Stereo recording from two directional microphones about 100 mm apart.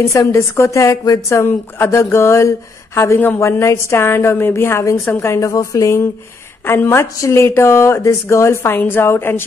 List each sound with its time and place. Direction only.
0.0 s a woman's voice: 30° left (ahead or behind)